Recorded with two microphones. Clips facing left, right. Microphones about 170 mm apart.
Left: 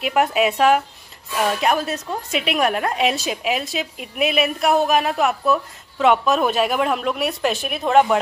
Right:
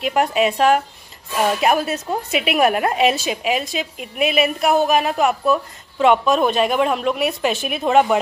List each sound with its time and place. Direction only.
0.0 s a woman's voice: 5° left (ahead or behind)
1.6 s a woman's voice: 10° right (ahead or behind)